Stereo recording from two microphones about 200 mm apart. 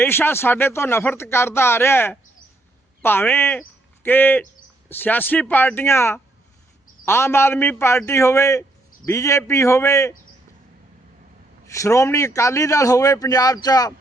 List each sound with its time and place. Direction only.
0.0 s a man's voice: 10° left (ahead or behind)
11.7 s a man's voice: 15° left (ahead or behind)